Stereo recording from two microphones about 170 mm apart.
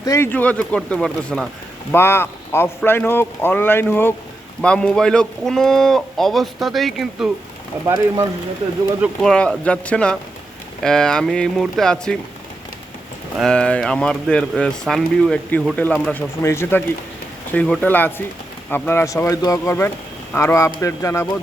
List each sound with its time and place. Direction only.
0.0 s speech: 15° left (ahead or behind); by 7.3 s centre (ahead or behind)
7.9 s speech: 15° right (ahead or behind)
9.2 s speech: 5° left (ahead or behind)
13.4 s speech: 5° left (ahead or behind)